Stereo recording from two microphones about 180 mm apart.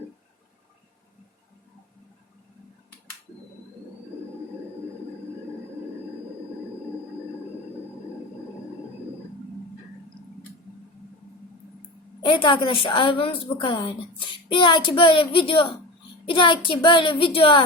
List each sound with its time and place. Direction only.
12.2 s a woman's voice: 30° left (ahead or behind)